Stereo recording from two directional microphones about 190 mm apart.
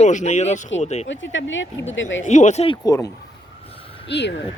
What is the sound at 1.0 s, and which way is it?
Speech, 80° left.